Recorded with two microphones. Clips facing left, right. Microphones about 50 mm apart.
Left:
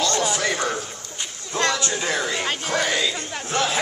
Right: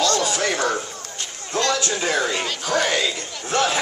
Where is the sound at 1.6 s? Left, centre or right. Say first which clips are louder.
Right 1 dB; left.